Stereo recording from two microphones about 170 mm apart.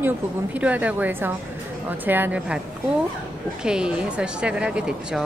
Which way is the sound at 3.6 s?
5° right (ahead or behind).